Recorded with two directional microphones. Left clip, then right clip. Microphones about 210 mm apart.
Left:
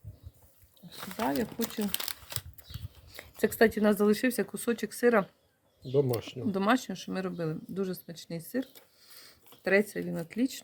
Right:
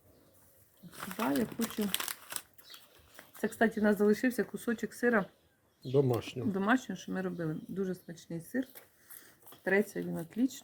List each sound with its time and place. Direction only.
1.3 s speech: 30° left (ahead or behind)
3.2 s speech: 50° left (ahead or behind)
5.9 s speech: centre (ahead or behind)
6.5 s speech: 45° left (ahead or behind)
9.6 s speech: 50° left (ahead or behind)